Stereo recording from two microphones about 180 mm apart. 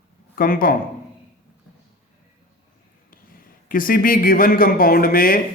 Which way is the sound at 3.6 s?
50° left (ahead or behind).